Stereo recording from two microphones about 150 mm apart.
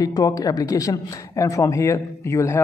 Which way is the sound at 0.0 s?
25° left (ahead or behind).